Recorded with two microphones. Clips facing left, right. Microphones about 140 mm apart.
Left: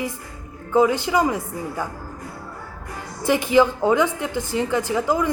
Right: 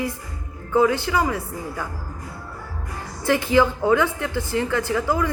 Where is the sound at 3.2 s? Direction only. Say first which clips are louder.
Left 1 dB; 15° left (ahead or behind).